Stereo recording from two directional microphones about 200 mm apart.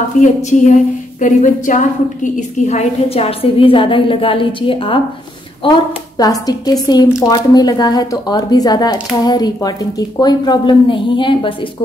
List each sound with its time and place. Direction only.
0.2 s a woman's voice: 40° left (ahead or behind)
6.1 s a woman's voice: 20° left (ahead or behind)